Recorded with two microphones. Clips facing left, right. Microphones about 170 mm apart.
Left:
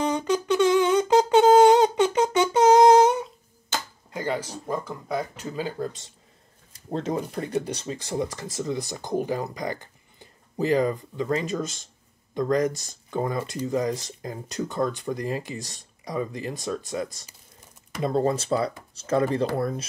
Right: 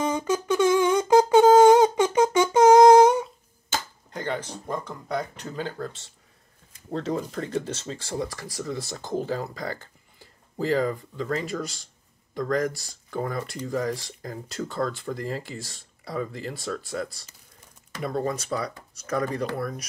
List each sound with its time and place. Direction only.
0.0 s humming: 10° right (ahead or behind)
1.1 s wind instrument: 10° right (ahead or behind)
2.3 s humming: 10° right (ahead or behind)
4.1 s speech: 10° left (ahead or behind); by 19.9 s 25° left (ahead or behind)